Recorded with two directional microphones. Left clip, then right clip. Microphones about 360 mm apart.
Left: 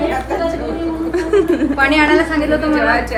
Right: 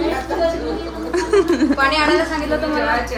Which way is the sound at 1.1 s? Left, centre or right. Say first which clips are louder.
Left 1 dB; centre.